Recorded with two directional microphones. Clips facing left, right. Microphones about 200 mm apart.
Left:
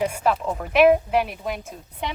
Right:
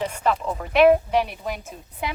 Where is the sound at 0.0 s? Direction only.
10° left (ahead or behind).